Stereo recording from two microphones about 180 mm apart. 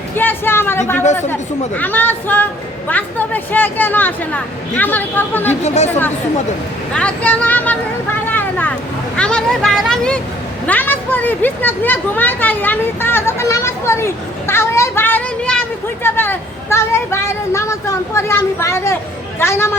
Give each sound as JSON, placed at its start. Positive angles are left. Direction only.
{"t": 0.2, "sound": "speech", "side_deg": 10}
{"t": 5.6, "sound": "speech", "side_deg": 40}
{"t": 6.9, "sound": "speech", "side_deg": 5}
{"t": 8.3, "sound": "vehicle", "side_deg": 10}
{"t": 9.1, "sound": "speech", "side_deg": 5}